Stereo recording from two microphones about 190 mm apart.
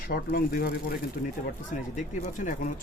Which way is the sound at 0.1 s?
50° left (ahead or behind).